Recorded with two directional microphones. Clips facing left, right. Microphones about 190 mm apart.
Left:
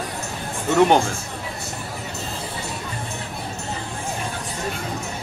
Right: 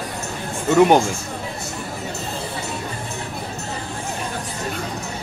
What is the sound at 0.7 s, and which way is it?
Speech, 5° right (ahead or behind).